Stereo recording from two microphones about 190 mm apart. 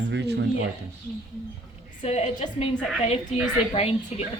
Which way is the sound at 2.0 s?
35° left (ahead or behind).